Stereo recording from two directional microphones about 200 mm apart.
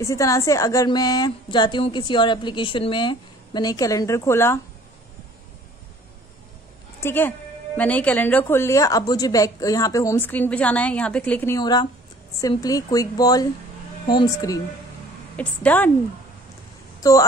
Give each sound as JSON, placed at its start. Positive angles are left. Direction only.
{"t": 0.0, "sound": "a woman's voice", "side_deg": 15}
{"t": 7.0, "sound": "a woman's voice", "side_deg": 10}